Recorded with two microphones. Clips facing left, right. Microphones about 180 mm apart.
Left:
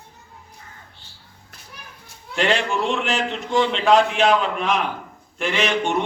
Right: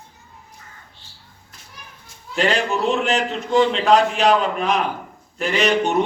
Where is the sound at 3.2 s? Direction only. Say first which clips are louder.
Right 3 dB; 40° right (ahead or behind).